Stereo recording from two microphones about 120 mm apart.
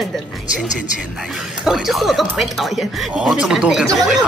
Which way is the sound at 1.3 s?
Centre (ahead or behind).